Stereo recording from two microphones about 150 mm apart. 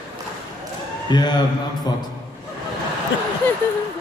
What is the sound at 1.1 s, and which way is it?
Speech, 30° left (ahead or behind).